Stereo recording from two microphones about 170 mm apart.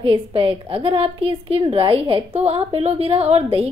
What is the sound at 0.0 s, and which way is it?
A woman's voice, 30° right (ahead or behind).